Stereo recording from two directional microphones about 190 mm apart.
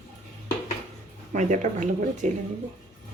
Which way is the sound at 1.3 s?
40° right (ahead or behind).